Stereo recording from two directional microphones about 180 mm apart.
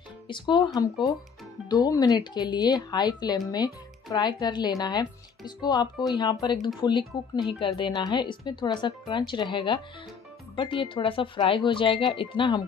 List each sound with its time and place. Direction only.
0.3 s speech: 25° left (ahead or behind)
1.7 s speech: 25° left (ahead or behind)